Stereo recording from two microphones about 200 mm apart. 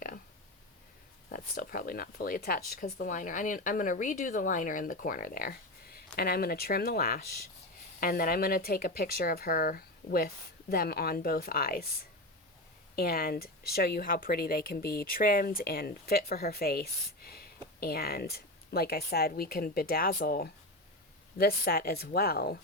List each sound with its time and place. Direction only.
1.3 s speech: 45° left (ahead or behind)
13.0 s speech: 50° left (ahead or behind)